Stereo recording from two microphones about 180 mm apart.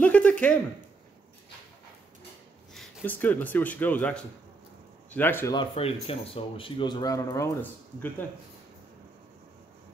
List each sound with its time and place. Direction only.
0.0 s a sound: 10° left (ahead or behind)
2.7 s speech: 5° left (ahead or behind)
5.6 s speech: 30° left (ahead or behind)